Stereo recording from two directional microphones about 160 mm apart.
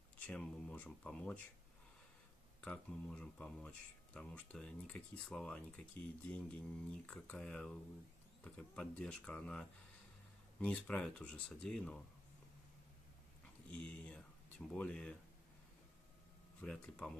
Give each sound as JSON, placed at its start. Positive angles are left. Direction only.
{"t": 0.3, "sound": "speech", "side_deg": 5}
{"t": 2.6, "sound": "speech", "side_deg": 5}
{"t": 13.7, "sound": "speech", "side_deg": 10}
{"t": 16.5, "sound": "speech", "side_deg": 5}